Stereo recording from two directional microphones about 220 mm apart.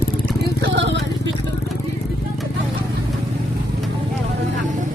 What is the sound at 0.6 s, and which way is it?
Vehicle, 55° right (ahead or behind).